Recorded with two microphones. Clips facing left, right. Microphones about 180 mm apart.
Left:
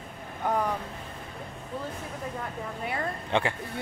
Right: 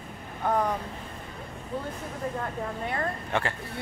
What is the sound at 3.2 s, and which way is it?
Speech, 20° left (ahead or behind).